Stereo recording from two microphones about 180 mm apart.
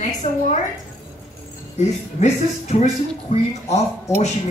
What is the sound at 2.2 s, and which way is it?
Speech, 40° left (ahead or behind).